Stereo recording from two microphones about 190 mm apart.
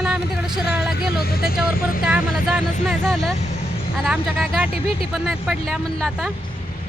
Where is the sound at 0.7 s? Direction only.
Centre (ahead or behind).